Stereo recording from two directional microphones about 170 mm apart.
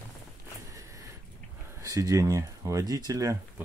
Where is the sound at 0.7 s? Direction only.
20° right (ahead or behind).